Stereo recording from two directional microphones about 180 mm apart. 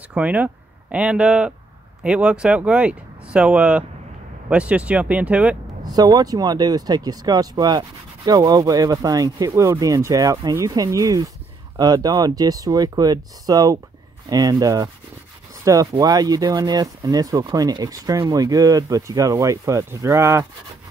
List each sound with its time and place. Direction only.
0.1 s speech: 10° right (ahead or behind)
5.9 s speech: 20° right (ahead or behind)